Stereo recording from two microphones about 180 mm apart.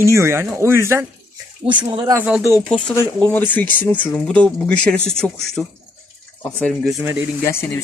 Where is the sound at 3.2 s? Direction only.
10° left (ahead or behind).